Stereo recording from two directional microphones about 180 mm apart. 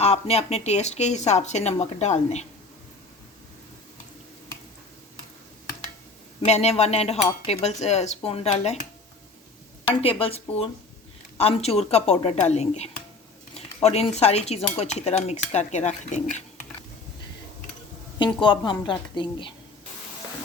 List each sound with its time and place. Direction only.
0.0 s speech: 35° left (ahead or behind)
6.4 s speech: 35° left (ahead or behind)
18.2 s a woman's voice: 25° left (ahead or behind)